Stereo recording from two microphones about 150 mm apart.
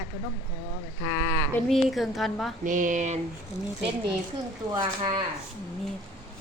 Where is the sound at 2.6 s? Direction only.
60° right (ahead or behind).